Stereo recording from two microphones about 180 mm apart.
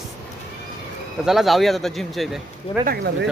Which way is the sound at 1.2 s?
Centre (ahead or behind).